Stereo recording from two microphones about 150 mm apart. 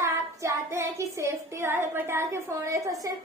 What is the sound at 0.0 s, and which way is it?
Child singing, 20° right (ahead or behind).